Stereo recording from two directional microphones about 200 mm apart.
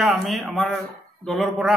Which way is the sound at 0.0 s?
Centre (ahead or behind).